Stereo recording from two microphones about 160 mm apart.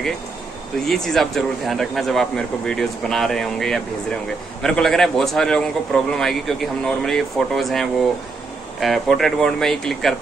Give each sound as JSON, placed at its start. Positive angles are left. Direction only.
{"t": 0.8, "sound": "a man's voice", "side_deg": 0}